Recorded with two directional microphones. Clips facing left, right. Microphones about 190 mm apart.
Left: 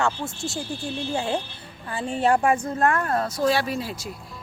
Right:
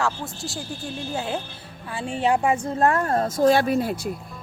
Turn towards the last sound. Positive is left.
turn(degrees=-55)  # may be behind; listen again after turning